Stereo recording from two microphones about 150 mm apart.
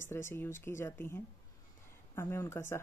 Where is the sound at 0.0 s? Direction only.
15° left (ahead or behind).